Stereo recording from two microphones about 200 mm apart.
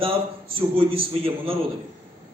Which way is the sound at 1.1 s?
30° right (ahead or behind).